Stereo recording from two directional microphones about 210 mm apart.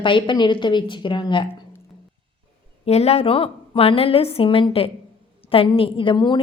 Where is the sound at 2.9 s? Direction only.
30° left (ahead or behind).